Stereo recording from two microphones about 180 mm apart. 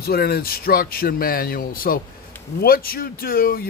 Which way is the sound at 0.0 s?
60° left (ahead or behind).